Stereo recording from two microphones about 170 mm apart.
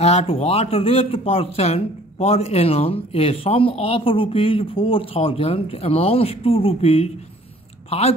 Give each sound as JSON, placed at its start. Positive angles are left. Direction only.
{"t": 0.0, "sound": "speech", "side_deg": 35}